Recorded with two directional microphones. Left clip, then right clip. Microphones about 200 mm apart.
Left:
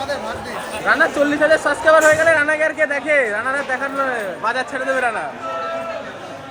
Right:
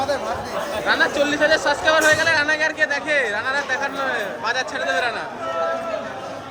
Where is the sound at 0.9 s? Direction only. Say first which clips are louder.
Left 4 dB; 40° left (ahead or behind).